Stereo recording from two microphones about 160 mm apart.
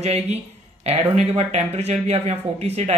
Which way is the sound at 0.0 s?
45° right (ahead or behind).